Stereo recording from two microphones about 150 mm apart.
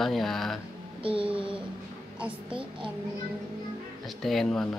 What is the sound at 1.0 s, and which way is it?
Child singing, 35° right (ahead or behind).